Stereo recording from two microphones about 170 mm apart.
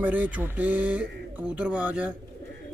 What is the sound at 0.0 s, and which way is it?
A man's voice, 10° right (ahead or behind).